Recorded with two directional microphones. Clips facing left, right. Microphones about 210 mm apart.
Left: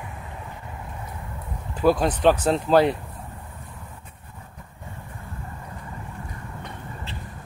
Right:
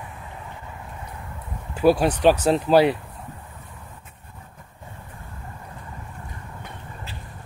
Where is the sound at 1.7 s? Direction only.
10° right (ahead or behind).